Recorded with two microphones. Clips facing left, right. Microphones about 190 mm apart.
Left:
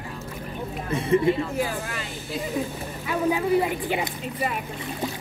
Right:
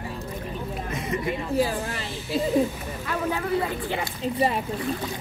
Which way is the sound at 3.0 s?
15° left (ahead or behind).